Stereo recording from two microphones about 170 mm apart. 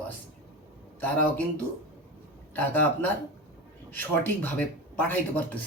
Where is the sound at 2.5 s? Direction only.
10° left (ahead or behind).